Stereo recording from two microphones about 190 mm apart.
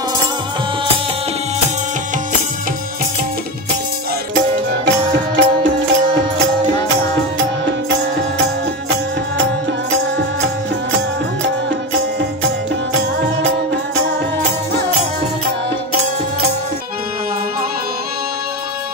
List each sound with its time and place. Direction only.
4.8 s music: 70° right (ahead or behind)